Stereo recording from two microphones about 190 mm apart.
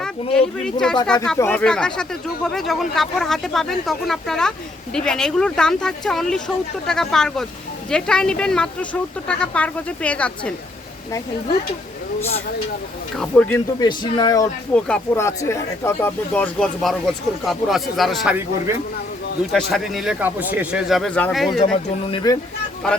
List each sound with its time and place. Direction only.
0.3 s speech: 5° left (ahead or behind)
13.1 s speech: 5° left (ahead or behind)
13.7 s speech: 20° left (ahead or behind)
14.7 s speech: 10° left (ahead or behind)
22.1 s speech: 20° left (ahead or behind)
22.8 s speech: 5° left (ahead or behind)